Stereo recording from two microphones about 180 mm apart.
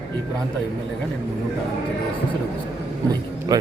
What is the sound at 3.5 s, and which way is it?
Speech, 20° right (ahead or behind).